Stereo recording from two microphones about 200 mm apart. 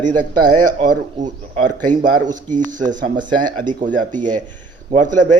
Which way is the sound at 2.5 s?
40° right (ahead or behind).